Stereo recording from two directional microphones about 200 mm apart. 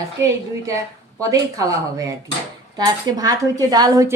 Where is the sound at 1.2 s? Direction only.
15° right (ahead or behind).